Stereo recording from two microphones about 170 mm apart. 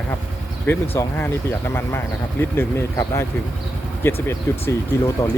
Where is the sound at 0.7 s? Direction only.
15° left (ahead or behind).